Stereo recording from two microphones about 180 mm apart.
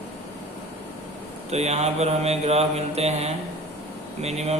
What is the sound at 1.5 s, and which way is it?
Speech, 35° right (ahead or behind).